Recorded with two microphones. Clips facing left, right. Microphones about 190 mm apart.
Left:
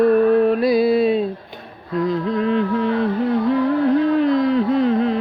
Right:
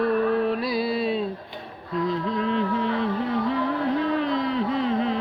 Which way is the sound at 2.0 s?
50° left (ahead or behind).